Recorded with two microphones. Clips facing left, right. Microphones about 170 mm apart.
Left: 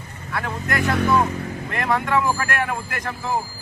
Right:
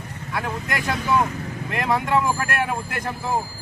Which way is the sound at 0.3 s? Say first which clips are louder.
Left 2 dB; 15° right (ahead or behind).